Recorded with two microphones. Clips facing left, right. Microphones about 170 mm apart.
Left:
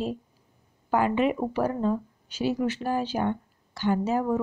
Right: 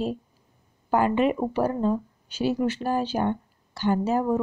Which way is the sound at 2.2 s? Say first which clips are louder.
Right 2 dB; 30° right (ahead or behind).